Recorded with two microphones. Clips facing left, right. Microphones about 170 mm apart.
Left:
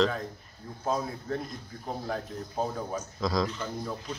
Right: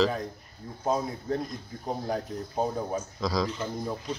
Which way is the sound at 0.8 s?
20° right (ahead or behind).